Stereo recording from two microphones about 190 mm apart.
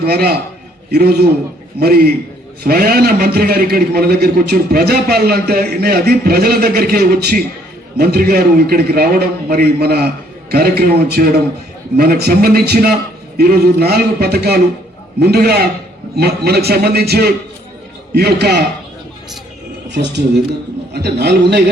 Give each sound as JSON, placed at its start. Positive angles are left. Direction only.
{"t": 0.0, "sound": "a man's voice", "side_deg": -55}
{"t": 19.9, "sound": "a man's voice", "side_deg": -65}